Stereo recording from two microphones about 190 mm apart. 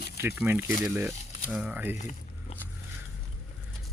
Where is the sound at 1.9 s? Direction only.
40° left (ahead or behind).